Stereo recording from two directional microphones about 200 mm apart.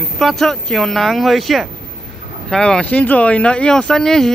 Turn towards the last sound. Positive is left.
turn(degrees=0)  # may be behind; listen again after turning